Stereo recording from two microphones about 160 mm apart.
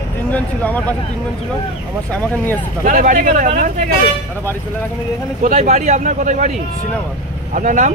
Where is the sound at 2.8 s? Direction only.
55° right (ahead or behind).